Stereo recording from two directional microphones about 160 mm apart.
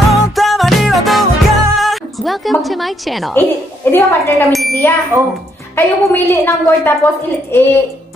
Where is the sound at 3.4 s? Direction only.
15° left (ahead or behind).